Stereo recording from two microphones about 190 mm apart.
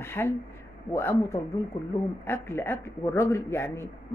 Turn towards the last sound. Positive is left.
turn(degrees=15)  # may be behind; listen again after turning